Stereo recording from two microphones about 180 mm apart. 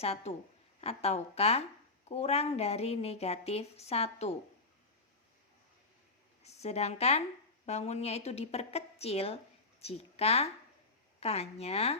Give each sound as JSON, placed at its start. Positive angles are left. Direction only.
{"t": 0.0, "sound": "a woman's voice", "side_deg": 35}
{"t": 6.4, "sound": "a woman's voice", "side_deg": 35}